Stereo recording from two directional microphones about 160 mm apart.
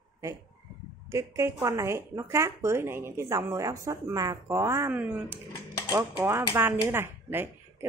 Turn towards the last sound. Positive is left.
turn(degrees=-15)  # may be behind; listen again after turning